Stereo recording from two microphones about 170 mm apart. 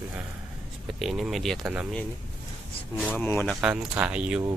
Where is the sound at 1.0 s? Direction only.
Centre (ahead or behind).